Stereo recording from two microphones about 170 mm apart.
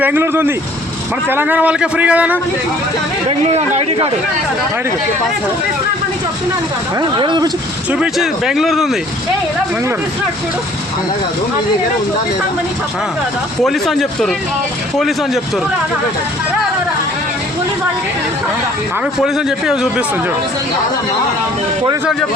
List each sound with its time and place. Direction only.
0.0 s a man's voice: 10° right (ahead or behind)
3.2 s speech: 35° right (ahead or behind)
7.2 s speech: 25° right (ahead or behind)
7.9 s speech: 5° right (ahead or behind)
13.6 s speech: centre (ahead or behind)
19.2 s speech: 5° right (ahead or behind)